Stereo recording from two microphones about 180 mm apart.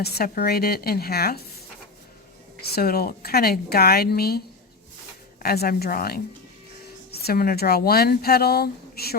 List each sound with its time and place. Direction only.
0.0 s a woman's voice: 60° left (ahead or behind)
2.6 s a woman's voice: 60° left (ahead or behind)